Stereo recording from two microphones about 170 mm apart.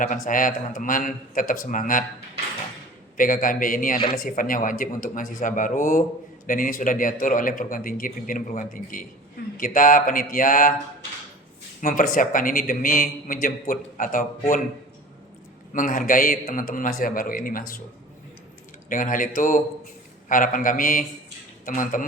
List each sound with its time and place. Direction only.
0.0 s a man's voice: 50° left (ahead or behind)
3.2 s a man's voice: 50° left (ahead or behind)
11.8 s a man's voice: 55° left (ahead or behind)
15.7 s a man's voice: 50° left (ahead or behind)
18.9 s a man's voice: 50° left (ahead or behind)